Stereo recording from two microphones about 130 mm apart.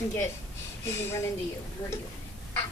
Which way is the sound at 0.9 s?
20° left (ahead or behind).